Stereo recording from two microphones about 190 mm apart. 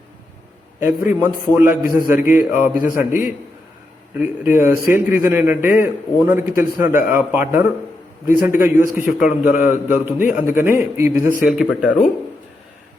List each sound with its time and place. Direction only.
0.8 s a man's voice: 10° right (ahead or behind)
11.2 s speech: 45° left (ahead or behind)
11.4 s speech: centre (ahead or behind)